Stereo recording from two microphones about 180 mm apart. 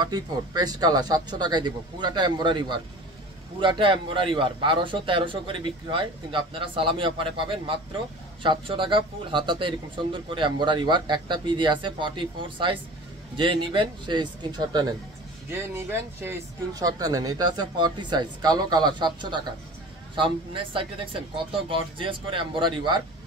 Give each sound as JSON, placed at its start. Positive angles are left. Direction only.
{"t": 0.0, "sound": "speech", "side_deg": -20}
{"t": 15.5, "sound": "speech", "side_deg": -15}